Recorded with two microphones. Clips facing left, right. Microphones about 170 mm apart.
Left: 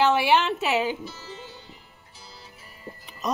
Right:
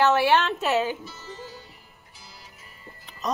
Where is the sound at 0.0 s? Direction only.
10° left (ahead or behind).